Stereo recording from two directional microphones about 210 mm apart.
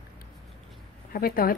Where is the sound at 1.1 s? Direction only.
45° left (ahead or behind).